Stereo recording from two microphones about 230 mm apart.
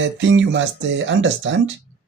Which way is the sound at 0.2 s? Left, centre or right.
Right.